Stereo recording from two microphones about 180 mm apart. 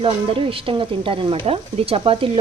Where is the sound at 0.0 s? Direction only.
30° right (ahead or behind).